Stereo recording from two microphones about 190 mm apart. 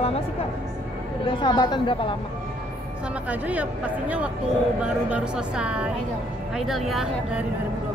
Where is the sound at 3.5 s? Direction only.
5° right (ahead or behind).